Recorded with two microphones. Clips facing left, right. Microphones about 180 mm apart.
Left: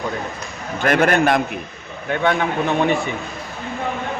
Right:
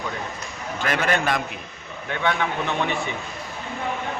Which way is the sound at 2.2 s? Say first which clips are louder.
Left 5 dB; 45° left (ahead or behind).